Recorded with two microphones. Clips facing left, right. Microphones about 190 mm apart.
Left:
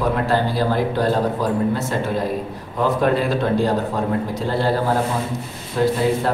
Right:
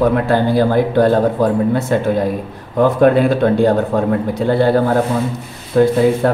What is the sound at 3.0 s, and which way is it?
Speech, 55° right (ahead or behind).